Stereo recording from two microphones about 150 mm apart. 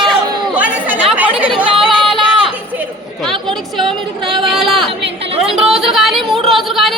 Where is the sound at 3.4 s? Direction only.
Centre (ahead or behind).